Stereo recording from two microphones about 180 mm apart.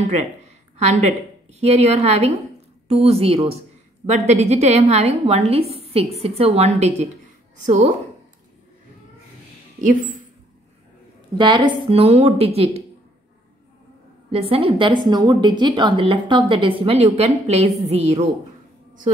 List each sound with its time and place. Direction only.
0.7 s a woman's voice: 40° right (ahead or behind)
11.3 s a woman's voice: 25° right (ahead or behind)
14.3 s a woman's voice: 30° right (ahead or behind)